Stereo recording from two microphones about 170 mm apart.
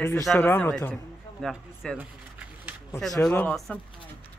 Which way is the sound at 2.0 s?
10° right (ahead or behind).